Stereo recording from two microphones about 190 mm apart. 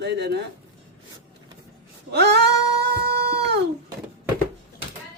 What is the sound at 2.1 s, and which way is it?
Female singing, 60° right (ahead or behind).